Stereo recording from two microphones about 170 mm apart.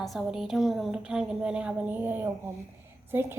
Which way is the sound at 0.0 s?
Centre (ahead or behind).